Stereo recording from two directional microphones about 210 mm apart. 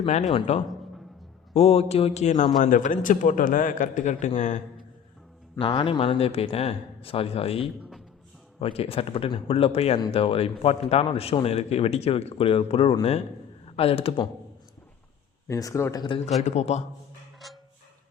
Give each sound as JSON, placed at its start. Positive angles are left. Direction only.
{"t": 0.0, "sound": "a man's voice", "side_deg": 35}
{"t": 5.5, "sound": "speech", "side_deg": 25}
{"t": 15.4, "sound": "speech", "side_deg": 15}